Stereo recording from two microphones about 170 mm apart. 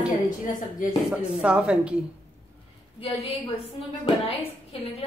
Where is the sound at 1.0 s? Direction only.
5° right (ahead or behind).